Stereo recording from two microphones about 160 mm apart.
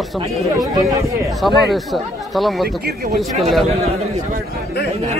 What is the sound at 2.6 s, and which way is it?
Speech, 75° right (ahead or behind).